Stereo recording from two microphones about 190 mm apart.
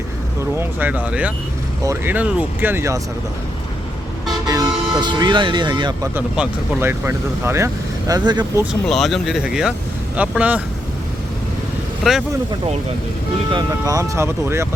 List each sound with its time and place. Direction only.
0.6 s speech: 10° right (ahead or behind)
4.4 s speech: 20° right (ahead or behind)
6.1 s speech: 10° right (ahead or behind)
8.9 s speech: centre (ahead or behind)
13.5 s speech: 20° right (ahead or behind)